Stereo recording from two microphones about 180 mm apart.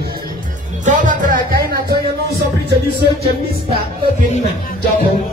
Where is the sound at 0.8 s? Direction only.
45° right (ahead or behind).